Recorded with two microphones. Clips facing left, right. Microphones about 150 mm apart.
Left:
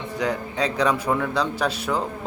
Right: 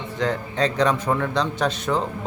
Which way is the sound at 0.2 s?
10° left (ahead or behind).